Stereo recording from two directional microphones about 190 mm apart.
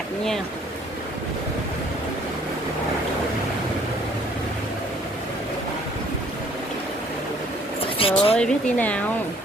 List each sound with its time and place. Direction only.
8.0 s speech: 30° left (ahead or behind)
8.4 s speech: 5° left (ahead or behind)